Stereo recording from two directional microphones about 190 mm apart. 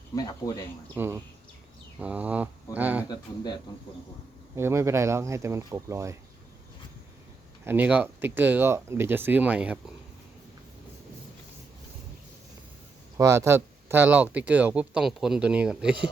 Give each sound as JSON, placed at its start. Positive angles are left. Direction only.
{"t": 0.2, "sound": "speech", "side_deg": 20}
{"t": 0.9, "sound": "speech", "side_deg": -10}
{"t": 3.1, "sound": "speech", "side_deg": 20}
{"t": 4.5, "sound": "speech", "side_deg": -15}
{"t": 7.6, "sound": "speech", "side_deg": -10}
{"t": 13.1, "sound": "speech", "side_deg": -15}